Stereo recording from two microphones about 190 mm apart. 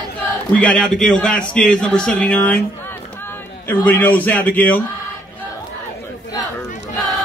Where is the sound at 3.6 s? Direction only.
10° left (ahead or behind).